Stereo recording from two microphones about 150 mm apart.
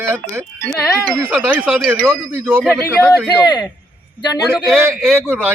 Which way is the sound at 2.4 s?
10° right (ahead or behind).